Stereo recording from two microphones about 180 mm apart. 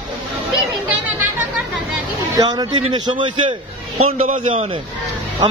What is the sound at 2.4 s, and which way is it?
A man's voice, 25° right (ahead or behind).